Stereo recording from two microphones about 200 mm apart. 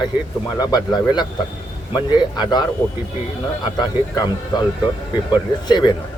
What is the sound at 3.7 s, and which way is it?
Speech, 20° left (ahead or behind).